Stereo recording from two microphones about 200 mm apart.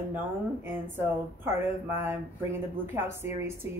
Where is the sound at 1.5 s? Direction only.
10° right (ahead or behind).